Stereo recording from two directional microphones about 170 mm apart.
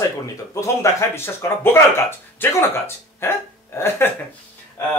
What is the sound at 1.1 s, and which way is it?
Speech, 15° left (ahead or behind).